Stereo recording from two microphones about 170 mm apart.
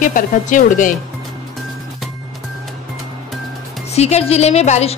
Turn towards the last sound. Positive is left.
turn(degrees=40)  # may be behind; listen again after turning